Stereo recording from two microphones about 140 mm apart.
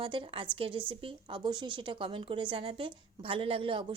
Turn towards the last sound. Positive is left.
turn(degrees=-40)  # may be behind; listen again after turning